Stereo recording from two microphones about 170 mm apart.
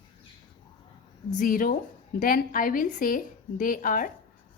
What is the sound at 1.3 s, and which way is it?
A woman's voice, 50° left (ahead or behind).